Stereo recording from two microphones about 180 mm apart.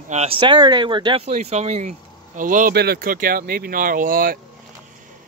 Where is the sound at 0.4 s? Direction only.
25° right (ahead or behind); by 4.4 s 50° right (ahead or behind).